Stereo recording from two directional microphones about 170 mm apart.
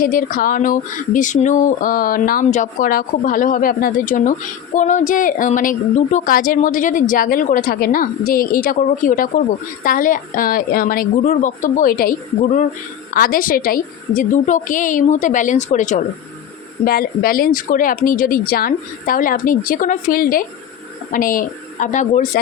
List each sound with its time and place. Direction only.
0.0 s a woman's voice: 55° left (ahead or behind)
13.1 s speech: 55° left (ahead or behind)
16.8 s a woman's voice: 60° left (ahead or behind)